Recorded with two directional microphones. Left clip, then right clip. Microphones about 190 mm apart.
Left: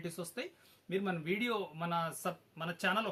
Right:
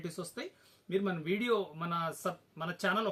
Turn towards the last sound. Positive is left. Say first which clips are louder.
# right 2 dB
turn(degrees=20)  # may be behind; listen again after turning